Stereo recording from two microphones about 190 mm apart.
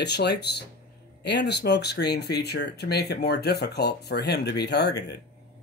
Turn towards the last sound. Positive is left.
turn(degrees=60)  # may be behind; listen again after turning